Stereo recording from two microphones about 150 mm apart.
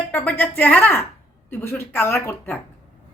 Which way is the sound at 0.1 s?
10° left (ahead or behind).